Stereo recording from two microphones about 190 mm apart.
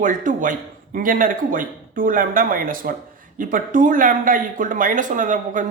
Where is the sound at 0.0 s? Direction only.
45° right (ahead or behind).